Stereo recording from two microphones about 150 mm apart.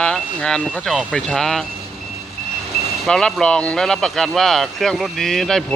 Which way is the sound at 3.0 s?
5° left (ahead or behind).